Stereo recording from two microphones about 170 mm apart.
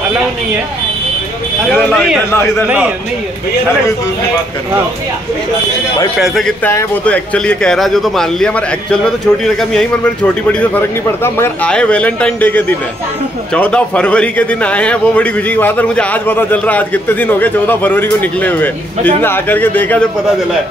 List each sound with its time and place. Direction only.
1.9 s a man's voice: 15° left (ahead or behind)
6.1 s a man's voice: centre (ahead or behind)
6.7 s a man's voice: 15° left (ahead or behind)
7.3 s a man's voice: 5° left (ahead or behind)